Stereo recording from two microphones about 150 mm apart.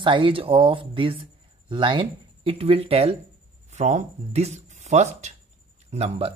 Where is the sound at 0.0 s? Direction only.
35° right (ahead or behind).